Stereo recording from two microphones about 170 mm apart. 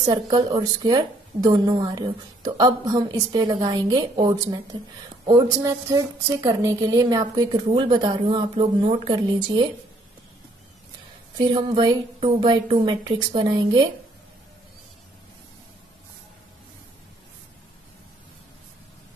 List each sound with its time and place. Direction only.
0.0 s a woman's voice: 25° right (ahead or behind)
11.3 s a woman's voice: 25° right (ahead or behind)